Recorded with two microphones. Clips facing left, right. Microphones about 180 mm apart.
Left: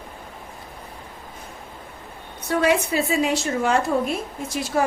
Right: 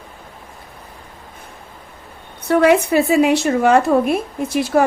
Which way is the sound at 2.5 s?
65° right (ahead or behind).